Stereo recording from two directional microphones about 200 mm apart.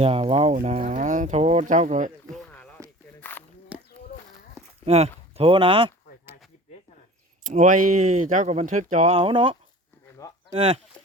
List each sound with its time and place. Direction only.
0.0 s speech: 30° right (ahead or behind)
2.3 s a sound: 10° left (ahead or behind)
3.2 s walk: 10° left (ahead or behind)
3.7 s a sound: 5° right (ahead or behind)
4.9 s speech: 30° right (ahead or behind)
7.4 s speech: 40° right (ahead or behind)